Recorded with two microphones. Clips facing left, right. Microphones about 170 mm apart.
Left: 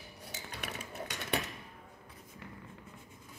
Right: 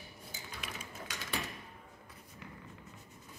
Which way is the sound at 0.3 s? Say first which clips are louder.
Left 4 dB; 75° left (ahead or behind).